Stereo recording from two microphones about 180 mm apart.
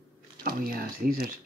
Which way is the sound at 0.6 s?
55° right (ahead or behind).